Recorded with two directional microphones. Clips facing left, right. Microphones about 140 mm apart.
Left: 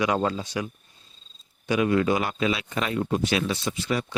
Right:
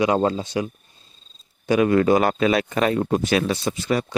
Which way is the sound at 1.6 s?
45° right (ahead or behind).